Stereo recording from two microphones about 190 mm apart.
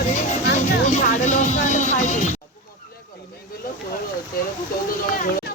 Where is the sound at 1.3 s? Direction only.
40° left (ahead or behind).